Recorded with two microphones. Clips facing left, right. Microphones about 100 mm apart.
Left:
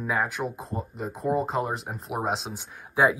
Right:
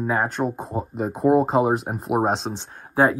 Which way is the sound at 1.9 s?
40° right (ahead or behind).